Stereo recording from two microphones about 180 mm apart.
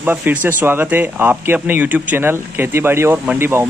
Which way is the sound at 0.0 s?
10° right (ahead or behind).